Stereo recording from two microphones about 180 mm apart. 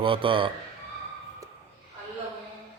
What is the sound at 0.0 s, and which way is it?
Speech, 30° right (ahead or behind).